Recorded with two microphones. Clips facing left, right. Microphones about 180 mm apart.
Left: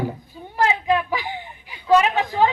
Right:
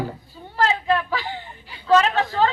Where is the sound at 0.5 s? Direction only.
15° left (ahead or behind).